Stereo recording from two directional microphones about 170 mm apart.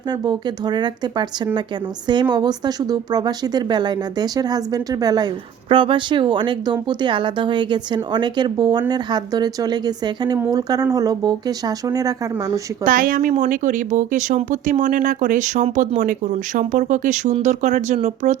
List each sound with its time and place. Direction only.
0.1 s speech: 25° right (ahead or behind)
2.3 s speech: 25° right (ahead or behind)
12.8 s speech: 55° right (ahead or behind)